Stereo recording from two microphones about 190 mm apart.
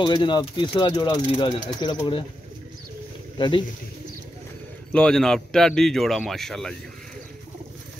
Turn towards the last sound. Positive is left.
turn(degrees=0)  # may be behind; listen again after turning